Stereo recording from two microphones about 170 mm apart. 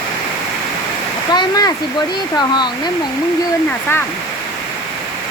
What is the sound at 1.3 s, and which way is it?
Waterfall, 20° left (ahead or behind).